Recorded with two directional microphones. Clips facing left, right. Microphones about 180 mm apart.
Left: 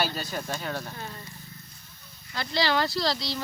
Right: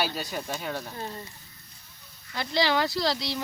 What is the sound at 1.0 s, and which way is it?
Speech, 30° right (ahead or behind).